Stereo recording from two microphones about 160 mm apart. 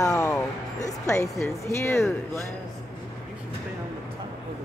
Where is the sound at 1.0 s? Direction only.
20° left (ahead or behind).